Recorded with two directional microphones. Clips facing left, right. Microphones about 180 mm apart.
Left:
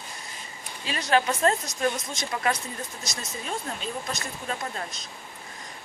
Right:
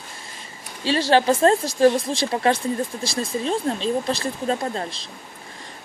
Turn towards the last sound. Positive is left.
turn(degrees=-30)  # may be behind; listen again after turning